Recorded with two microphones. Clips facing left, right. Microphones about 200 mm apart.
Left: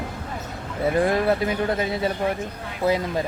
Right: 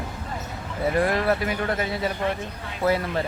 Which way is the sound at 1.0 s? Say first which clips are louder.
Left 2 dB; 20° left (ahead or behind).